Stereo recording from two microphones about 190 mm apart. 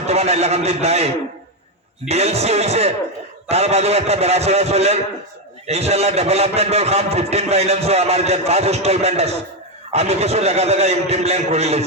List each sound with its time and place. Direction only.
0.0 s a man's voice: 35° right (ahead or behind)